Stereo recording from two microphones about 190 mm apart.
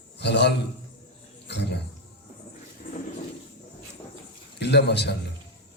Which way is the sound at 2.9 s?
50° left (ahead or behind).